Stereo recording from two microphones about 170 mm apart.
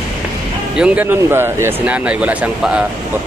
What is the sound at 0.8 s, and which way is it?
Speech, 10° right (ahead or behind).